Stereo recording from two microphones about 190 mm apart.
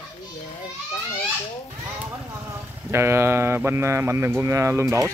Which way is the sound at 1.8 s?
10° right (ahead or behind).